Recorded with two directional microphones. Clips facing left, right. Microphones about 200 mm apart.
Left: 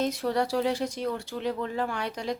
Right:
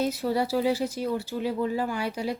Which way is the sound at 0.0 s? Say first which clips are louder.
Right 1 dB; 5° right (ahead or behind).